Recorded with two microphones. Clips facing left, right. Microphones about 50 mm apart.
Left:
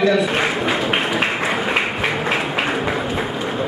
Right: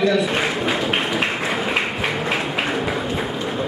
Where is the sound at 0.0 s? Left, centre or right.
Centre.